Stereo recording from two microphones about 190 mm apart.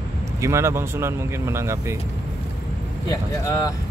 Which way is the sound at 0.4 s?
15° right (ahead or behind).